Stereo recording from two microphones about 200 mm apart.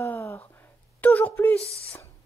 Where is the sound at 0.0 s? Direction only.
10° left (ahead or behind).